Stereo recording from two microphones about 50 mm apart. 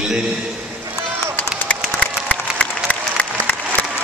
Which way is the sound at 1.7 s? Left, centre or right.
Left.